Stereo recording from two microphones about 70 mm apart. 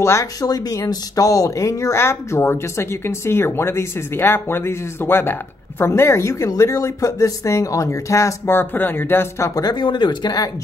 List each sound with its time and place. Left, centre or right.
0.0 s speech: left
0.4 s speech: left
9.6 s speech: left